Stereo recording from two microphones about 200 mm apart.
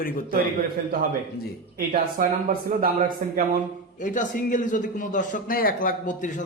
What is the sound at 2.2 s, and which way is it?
Speech, 45° right (ahead or behind).